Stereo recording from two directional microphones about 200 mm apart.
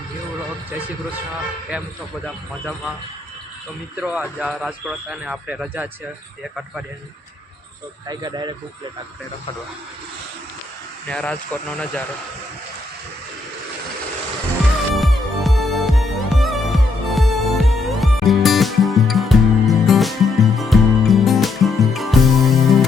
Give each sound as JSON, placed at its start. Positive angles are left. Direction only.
{"t": 2.2, "sound": "a man's voice", "side_deg": 0}
{"t": 4.0, "sound": "a man's voice", "side_deg": -5}
{"t": 8.0, "sound": "speech", "side_deg": -20}
{"t": 11.1, "sound": "a man's voice", "side_deg": 5}
{"t": 14.9, "sound": "music", "side_deg": 0}